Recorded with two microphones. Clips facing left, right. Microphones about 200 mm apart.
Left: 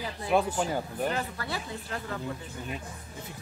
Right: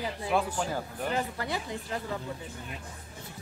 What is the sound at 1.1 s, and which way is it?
Speech, 20° right (ahead or behind).